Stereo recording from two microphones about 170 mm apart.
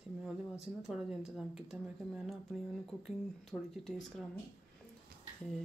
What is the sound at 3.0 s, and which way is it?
Speech, centre (ahead or behind).